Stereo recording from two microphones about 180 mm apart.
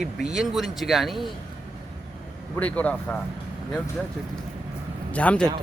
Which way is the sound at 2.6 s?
10° left (ahead or behind).